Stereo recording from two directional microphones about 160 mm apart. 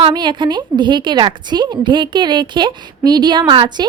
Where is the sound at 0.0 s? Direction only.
30° right (ahead or behind).